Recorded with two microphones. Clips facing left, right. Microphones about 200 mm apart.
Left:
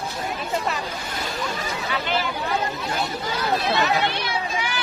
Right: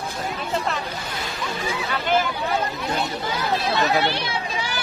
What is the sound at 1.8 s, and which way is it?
Speech, 45° right (ahead or behind).